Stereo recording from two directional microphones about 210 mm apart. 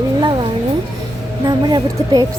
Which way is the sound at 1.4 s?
20° right (ahead or behind).